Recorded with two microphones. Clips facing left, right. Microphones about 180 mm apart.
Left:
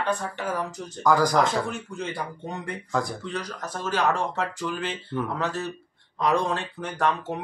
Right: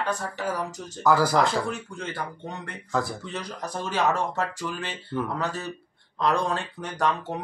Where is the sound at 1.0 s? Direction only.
5° right (ahead or behind).